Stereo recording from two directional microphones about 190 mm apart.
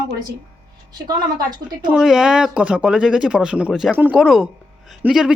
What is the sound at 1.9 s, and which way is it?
Speech, centre (ahead or behind).